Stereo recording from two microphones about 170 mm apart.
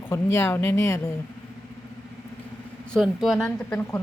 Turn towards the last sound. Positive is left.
turn(degrees=15)  # may be behind; listen again after turning